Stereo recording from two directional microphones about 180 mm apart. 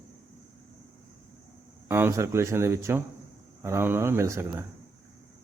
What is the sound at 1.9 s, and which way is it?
Speech, 15° right (ahead or behind).